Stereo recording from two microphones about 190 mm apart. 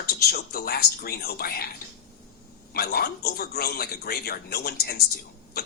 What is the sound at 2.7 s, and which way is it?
Speech, 55° left (ahead or behind).